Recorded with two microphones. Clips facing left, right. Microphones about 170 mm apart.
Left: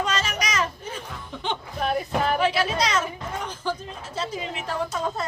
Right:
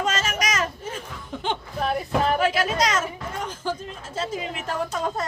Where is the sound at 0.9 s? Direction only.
45° right (ahead or behind).